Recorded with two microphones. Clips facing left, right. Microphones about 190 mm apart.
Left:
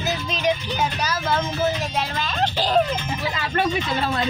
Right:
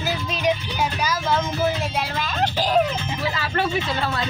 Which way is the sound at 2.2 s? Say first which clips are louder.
Right 1 dB; 10° right (ahead or behind).